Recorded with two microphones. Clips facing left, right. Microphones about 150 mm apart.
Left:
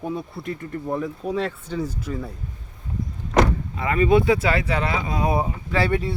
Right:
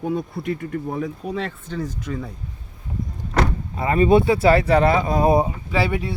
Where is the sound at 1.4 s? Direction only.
5° left (ahead or behind).